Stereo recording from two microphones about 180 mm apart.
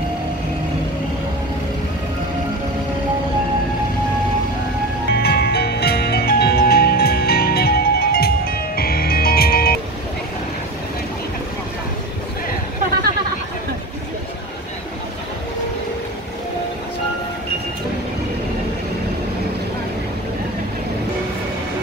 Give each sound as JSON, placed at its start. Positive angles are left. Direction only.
{"t": 5.1, "sound": "music", "side_deg": 65}